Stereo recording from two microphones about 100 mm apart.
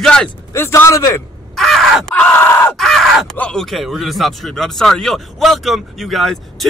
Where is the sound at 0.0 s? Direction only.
10° left (ahead or behind).